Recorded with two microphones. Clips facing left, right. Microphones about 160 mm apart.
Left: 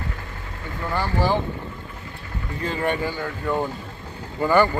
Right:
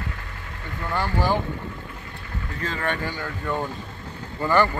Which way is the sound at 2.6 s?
15° left (ahead or behind).